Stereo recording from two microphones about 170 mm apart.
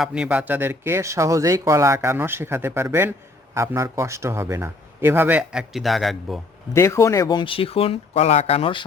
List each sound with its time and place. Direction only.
0.0 s speech: 5° right (ahead or behind)
6.7 s speech: 15° left (ahead or behind); by 8.8 s 35° left (ahead or behind)